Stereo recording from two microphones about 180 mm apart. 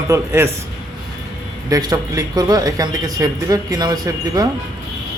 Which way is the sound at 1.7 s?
20° right (ahead or behind).